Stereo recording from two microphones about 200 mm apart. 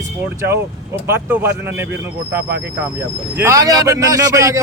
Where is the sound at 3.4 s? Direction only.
15° right (ahead or behind).